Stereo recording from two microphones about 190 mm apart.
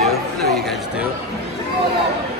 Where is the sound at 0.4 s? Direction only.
60° right (ahead or behind).